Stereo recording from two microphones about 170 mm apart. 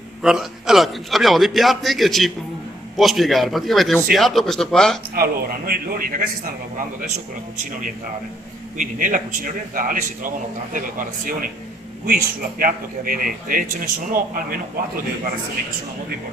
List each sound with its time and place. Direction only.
0.2 s a man's voice: 5° right (ahead or behind)
5.1 s a man's voice: 65° right (ahead or behind)
8.8 s a man's voice: 50° right (ahead or behind)